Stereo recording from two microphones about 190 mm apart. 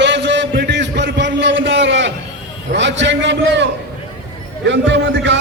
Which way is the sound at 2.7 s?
70° right (ahead or behind).